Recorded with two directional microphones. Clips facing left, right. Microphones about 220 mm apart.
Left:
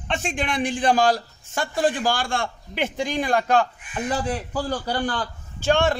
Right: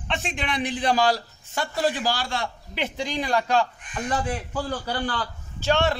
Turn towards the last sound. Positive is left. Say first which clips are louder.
# left 2 dB
turn(degrees=50)  # may be behind; listen again after turning